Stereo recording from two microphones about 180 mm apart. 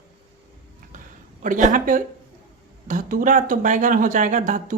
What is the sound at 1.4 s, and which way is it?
Speech, 45° right (ahead or behind).